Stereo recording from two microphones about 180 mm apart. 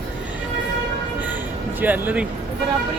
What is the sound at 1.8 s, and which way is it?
Speech, 10° right (ahead or behind).